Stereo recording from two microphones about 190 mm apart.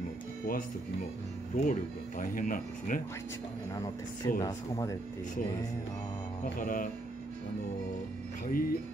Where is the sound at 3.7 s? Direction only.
20° left (ahead or behind).